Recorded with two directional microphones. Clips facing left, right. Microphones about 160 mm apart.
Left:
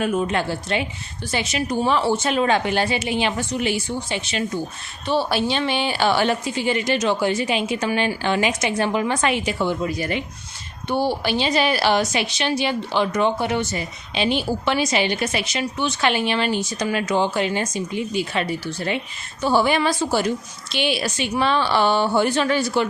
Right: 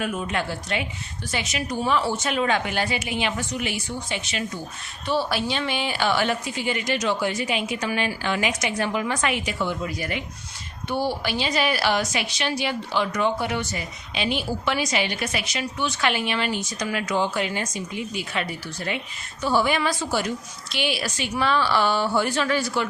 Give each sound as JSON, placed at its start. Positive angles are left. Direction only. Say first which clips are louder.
{"t": 0.0, "sound": "a woman's voice", "louder": "left 5 dB", "side_deg": 35}